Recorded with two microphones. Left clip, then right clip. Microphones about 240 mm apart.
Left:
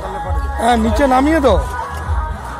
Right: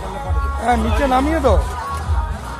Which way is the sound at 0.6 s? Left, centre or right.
Left.